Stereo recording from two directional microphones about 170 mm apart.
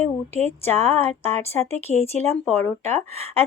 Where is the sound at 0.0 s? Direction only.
10° left (ahead or behind).